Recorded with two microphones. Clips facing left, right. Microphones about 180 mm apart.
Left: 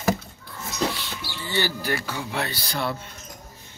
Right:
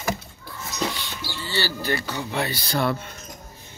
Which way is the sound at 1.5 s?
15° left (ahead or behind).